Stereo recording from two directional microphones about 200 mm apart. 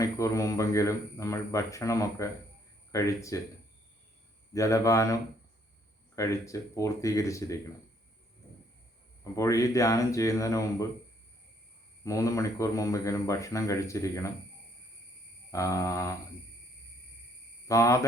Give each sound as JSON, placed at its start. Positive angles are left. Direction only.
{"t": 0.0, "sound": "speech", "side_deg": 15}
{"t": 4.5, "sound": "speech", "side_deg": 15}
{"t": 6.1, "sound": "speech", "side_deg": 15}
{"t": 9.3, "sound": "speech", "side_deg": 15}
{"t": 12.0, "sound": "speech", "side_deg": 15}
{"t": 15.5, "sound": "speech", "side_deg": 15}
{"t": 17.7, "sound": "speech", "side_deg": 15}